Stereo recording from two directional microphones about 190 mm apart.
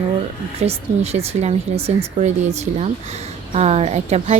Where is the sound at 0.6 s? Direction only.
35° right (ahead or behind).